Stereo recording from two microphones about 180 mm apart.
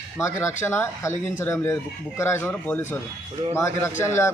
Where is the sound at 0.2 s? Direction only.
15° left (ahead or behind).